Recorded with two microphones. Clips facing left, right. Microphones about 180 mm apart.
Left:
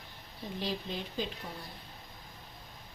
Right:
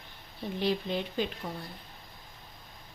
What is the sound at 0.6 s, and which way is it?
Speech, 65° right (ahead or behind).